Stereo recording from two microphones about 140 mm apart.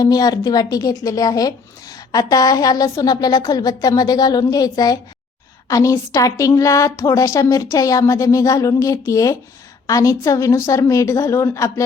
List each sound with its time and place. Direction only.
0.0 s a woman's voice: 25° left (ahead or behind)